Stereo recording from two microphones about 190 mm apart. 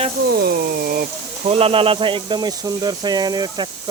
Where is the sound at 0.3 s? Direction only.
55° right (ahead or behind).